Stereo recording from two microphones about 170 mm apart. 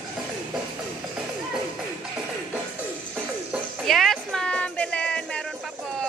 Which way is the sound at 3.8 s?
Centre (ahead or behind).